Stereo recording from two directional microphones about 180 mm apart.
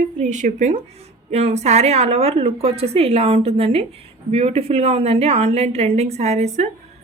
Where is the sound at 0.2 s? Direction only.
40° right (ahead or behind).